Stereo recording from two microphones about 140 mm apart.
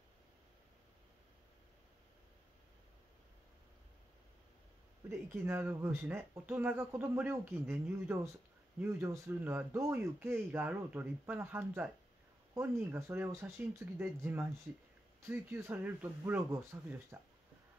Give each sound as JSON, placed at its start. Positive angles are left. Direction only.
{"t": 5.3, "sound": "speech", "side_deg": -15}